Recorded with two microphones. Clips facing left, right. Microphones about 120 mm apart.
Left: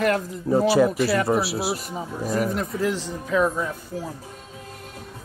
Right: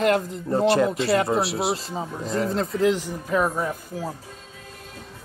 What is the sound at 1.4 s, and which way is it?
Speech, centre (ahead or behind).